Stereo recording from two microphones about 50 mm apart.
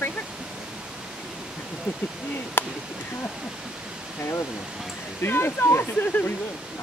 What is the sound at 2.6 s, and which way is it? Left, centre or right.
Speech, left.